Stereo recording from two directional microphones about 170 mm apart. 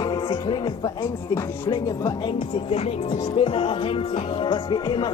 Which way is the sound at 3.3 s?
30° left (ahead or behind).